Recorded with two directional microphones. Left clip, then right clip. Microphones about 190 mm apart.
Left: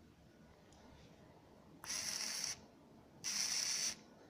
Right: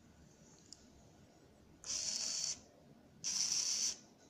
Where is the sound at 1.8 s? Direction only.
20° left (ahead or behind).